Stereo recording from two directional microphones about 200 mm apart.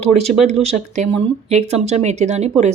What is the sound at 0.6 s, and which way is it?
A woman's voice, 35° right (ahead or behind).